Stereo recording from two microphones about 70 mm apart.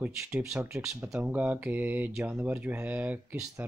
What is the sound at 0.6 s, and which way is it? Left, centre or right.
Speech, right.